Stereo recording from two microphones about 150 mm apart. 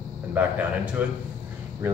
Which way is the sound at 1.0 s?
10° right (ahead or behind).